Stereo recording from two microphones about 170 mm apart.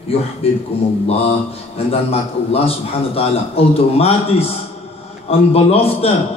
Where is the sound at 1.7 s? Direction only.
35° left (ahead or behind).